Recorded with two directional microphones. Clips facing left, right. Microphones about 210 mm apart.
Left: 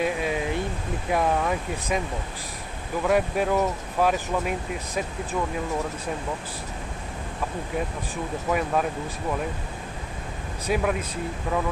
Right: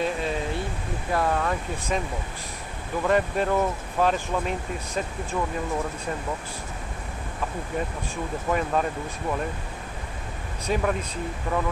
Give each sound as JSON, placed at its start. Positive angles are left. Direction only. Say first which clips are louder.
{"t": 0.0, "sound": "a sound", "louder": "left 1 dB", "side_deg": 10}
{"t": 1.1, "sound": "speech", "louder": "left 1 dB", "side_deg": 10}
{"t": 8.5, "sound": "speech", "louder": "even", "side_deg": 5}
{"t": 10.7, "sound": "speech", "louder": "left 1 dB", "side_deg": 5}